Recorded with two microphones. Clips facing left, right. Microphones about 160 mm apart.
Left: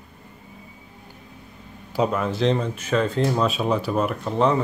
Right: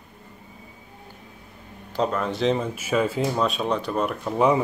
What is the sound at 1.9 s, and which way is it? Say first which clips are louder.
Speech: left 2 dB; 5° left (ahead or behind).